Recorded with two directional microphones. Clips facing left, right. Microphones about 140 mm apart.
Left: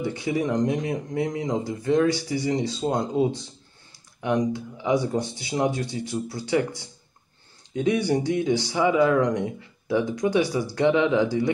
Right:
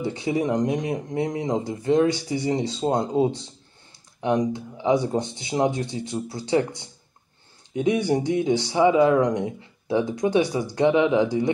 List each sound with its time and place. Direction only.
0.2 s speech: 25° right (ahead or behind)